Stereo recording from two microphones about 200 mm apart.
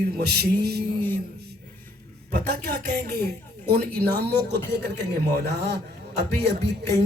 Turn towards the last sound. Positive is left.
turn(degrees=-55)  # may be behind; listen again after turning